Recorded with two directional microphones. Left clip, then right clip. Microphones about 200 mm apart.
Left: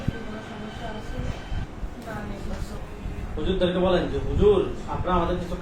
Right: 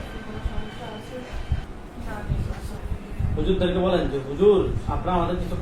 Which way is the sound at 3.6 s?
10° right (ahead or behind).